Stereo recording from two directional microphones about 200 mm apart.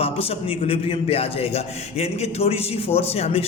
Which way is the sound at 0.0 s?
30° left (ahead or behind).